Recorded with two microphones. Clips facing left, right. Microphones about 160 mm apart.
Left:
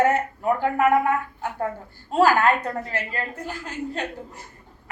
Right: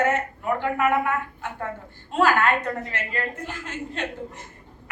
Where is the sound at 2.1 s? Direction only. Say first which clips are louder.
Left 2 dB; 35° left (ahead or behind).